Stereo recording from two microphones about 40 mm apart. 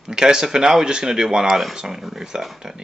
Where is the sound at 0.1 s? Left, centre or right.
Centre.